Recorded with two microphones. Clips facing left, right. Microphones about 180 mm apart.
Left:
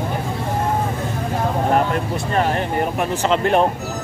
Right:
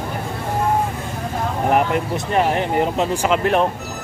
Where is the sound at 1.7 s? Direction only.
20° right (ahead or behind); by 3.7 s centre (ahead or behind).